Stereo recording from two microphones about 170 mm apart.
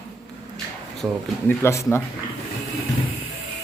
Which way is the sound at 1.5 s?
15° left (ahead or behind).